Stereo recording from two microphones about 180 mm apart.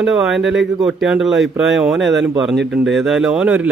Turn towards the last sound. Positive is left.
turn(degrees=-5)  # may be behind; listen again after turning